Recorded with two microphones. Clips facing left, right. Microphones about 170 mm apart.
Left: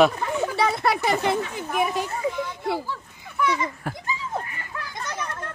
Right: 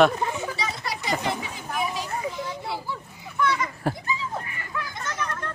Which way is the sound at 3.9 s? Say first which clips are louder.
Right 5 dB; 30° right (ahead or behind).